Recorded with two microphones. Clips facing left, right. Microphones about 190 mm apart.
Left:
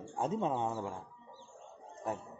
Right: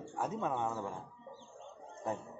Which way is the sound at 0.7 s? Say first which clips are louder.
Left 1 dB; 10° left (ahead or behind).